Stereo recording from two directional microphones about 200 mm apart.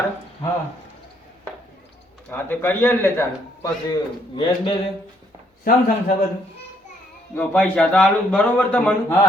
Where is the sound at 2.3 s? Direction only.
10° left (ahead or behind).